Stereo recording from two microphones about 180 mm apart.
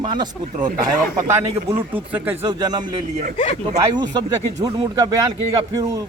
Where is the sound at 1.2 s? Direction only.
10° right (ahead or behind).